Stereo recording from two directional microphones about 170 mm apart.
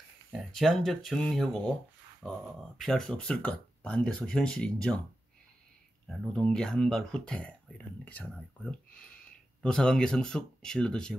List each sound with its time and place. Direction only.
0.3 s speech: centre (ahead or behind)
6.0 s speech: 5° left (ahead or behind)